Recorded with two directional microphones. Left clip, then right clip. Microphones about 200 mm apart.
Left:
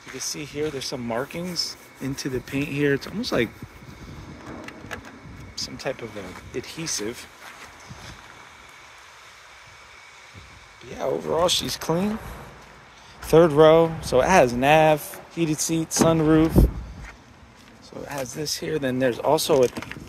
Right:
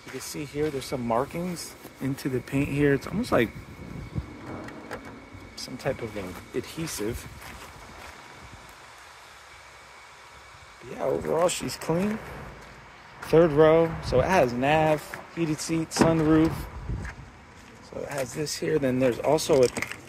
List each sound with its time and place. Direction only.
0.3 s speech: 10° left (ahead or behind)
5.6 s speech: centre (ahead or behind)
10.9 s speech: 20° left (ahead or behind)
13.3 s speech: 30° left (ahead or behind)
18.0 s speech: 10° left (ahead or behind)